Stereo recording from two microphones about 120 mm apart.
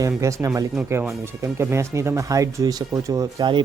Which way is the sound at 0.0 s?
25° right (ahead or behind).